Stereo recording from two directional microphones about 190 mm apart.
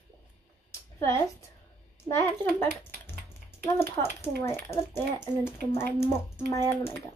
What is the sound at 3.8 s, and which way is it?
Speech, 10° left (ahead or behind).